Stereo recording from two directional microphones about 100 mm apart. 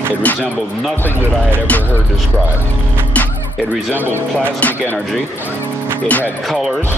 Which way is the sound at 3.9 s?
20° right (ahead or behind).